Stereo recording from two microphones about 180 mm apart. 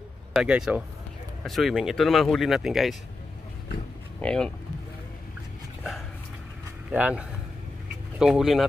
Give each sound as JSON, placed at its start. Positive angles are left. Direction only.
{"t": 0.3, "sound": "speech", "side_deg": -5}
{"t": 4.2, "sound": "speech", "side_deg": 5}
{"t": 6.9, "sound": "speech", "side_deg": -5}